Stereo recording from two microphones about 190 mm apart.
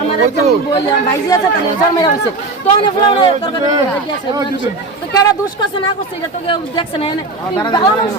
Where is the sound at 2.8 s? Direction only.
25° left (ahead or behind).